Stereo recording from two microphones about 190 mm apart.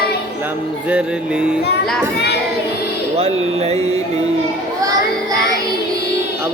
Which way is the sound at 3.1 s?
35° right (ahead or behind).